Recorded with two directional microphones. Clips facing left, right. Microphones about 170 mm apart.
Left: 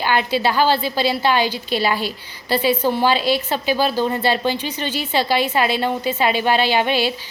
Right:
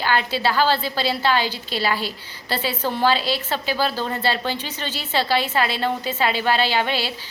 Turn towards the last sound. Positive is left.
turn(degrees=15)  # may be behind; listen again after turning